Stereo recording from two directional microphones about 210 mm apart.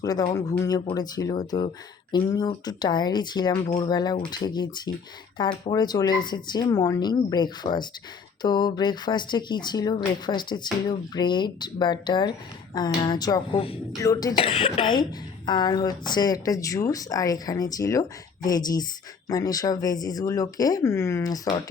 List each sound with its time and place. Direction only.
0.0 s speech: 20° left (ahead or behind)